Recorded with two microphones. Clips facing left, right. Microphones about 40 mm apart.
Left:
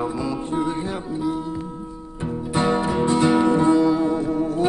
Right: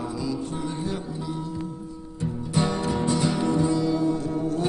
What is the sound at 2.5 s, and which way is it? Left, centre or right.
Music, left.